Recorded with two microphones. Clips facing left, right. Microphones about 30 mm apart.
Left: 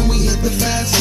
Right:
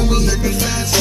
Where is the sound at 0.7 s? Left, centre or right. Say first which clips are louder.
Left 2 dB; centre.